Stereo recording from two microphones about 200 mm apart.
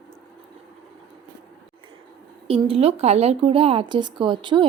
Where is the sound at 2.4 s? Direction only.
30° right (ahead or behind).